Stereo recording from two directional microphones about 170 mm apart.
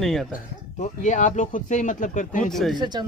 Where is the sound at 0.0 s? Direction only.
Centre (ahead or behind).